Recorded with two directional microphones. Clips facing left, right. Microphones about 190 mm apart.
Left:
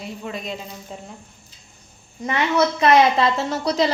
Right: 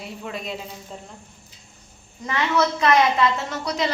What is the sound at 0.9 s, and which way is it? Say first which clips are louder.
Speech: left 3 dB; 5° left (ahead or behind).